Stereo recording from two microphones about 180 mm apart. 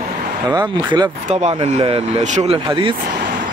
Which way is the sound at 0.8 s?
30° right (ahead or behind).